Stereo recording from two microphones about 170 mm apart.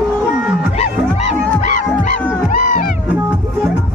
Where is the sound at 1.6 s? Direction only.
45° left (ahead or behind).